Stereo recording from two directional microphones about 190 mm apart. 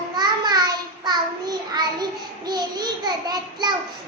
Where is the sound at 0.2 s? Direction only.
20° right (ahead or behind).